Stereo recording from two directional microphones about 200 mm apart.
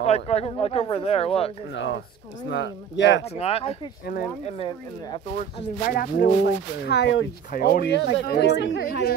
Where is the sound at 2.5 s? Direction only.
60° left (ahead or behind).